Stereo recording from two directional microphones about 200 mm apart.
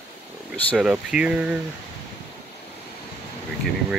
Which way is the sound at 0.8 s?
5° right (ahead or behind).